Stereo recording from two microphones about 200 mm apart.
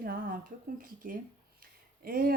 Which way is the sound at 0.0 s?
45° right (ahead or behind).